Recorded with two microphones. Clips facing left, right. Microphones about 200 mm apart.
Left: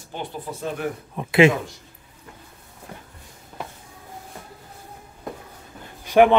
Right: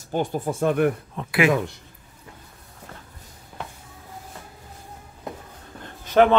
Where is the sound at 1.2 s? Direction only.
10° left (ahead or behind).